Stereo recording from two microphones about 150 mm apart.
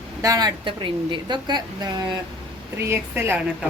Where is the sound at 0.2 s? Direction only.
25° right (ahead or behind).